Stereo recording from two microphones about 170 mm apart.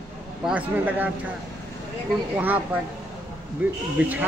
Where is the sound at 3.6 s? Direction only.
10° right (ahead or behind).